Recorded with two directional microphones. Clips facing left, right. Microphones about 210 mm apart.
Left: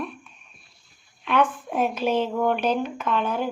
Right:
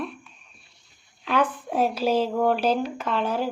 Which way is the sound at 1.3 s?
35° right (ahead or behind).